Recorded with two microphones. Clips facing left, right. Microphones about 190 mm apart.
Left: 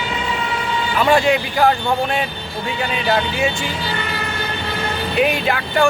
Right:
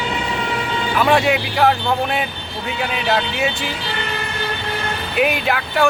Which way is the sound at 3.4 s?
Centre (ahead or behind).